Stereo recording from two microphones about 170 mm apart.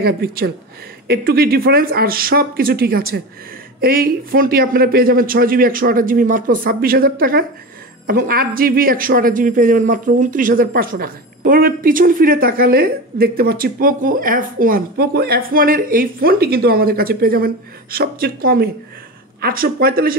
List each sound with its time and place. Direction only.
0.0 s speech: 65° right (ahead or behind)